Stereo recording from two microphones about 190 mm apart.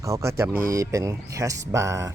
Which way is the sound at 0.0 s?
15° right (ahead or behind).